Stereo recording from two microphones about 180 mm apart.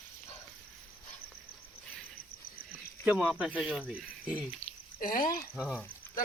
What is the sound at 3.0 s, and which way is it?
Speech, 5° right (ahead or behind).